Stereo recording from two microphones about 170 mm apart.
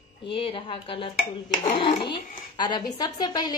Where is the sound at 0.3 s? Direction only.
30° left (ahead or behind).